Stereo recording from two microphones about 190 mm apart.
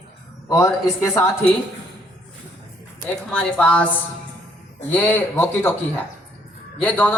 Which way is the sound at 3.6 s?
5° left (ahead or behind).